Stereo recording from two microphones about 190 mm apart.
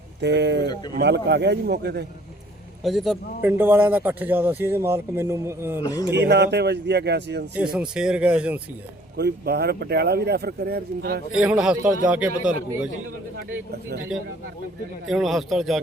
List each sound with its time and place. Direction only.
0.2 s speech: 65° right (ahead or behind)
2.8 s speech: centre (ahead or behind)
3.4 s a man's voice: 10° right (ahead or behind)
5.8 s speech: 20° left (ahead or behind)
6.1 s speech: 60° right (ahead or behind)
7.5 s speech: 5° right (ahead or behind)
9.1 s speech: 60° right (ahead or behind)
11.3 s a man's voice: 5° right (ahead or behind)
14.1 s speech: centre (ahead or behind)